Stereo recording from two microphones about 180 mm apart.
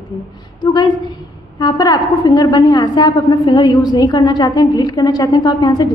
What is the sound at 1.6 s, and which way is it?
A woman's voice, 20° left (ahead or behind).